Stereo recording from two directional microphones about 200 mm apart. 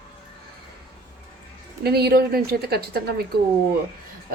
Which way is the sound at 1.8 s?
55° right (ahead or behind).